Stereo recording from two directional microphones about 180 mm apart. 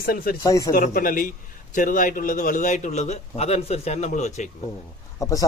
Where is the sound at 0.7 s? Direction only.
50° left (ahead or behind).